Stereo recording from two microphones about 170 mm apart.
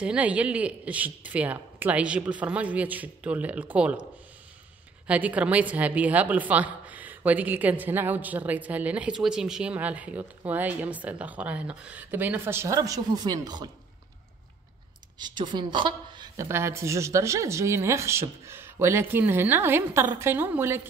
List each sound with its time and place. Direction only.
0.0 s a woman's voice: 5° right (ahead or behind)
5.0 s a woman's voice: 10° right (ahead or behind); by 13.7 s 25° right (ahead or behind)
15.1 s a woman's voice: 25° right (ahead or behind)
16.4 s a woman's voice: 15° right (ahead or behind)